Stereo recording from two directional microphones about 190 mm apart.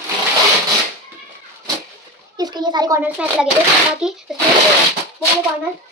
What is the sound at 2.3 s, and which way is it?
Speech, 20° right (ahead or behind).